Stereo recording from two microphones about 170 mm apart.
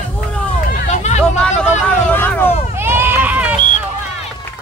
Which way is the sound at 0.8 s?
45° left (ahead or behind).